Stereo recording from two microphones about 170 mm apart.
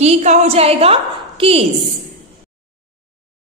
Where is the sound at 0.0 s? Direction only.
40° right (ahead or behind).